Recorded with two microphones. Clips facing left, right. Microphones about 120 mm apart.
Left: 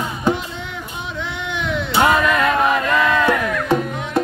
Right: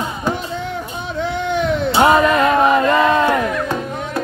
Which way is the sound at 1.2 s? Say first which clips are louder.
Right 9 dB; 40° right (ahead or behind).